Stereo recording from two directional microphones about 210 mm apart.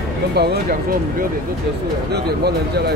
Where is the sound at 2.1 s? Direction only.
50° right (ahead or behind).